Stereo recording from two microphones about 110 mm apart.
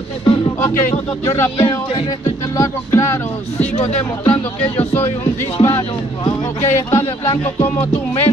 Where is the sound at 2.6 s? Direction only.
25° left (ahead or behind).